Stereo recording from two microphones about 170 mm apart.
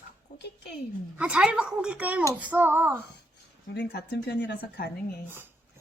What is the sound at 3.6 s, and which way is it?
Speech, 80° left.